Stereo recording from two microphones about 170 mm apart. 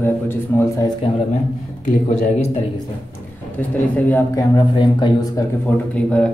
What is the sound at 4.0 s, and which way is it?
Speech, 10° left (ahead or behind).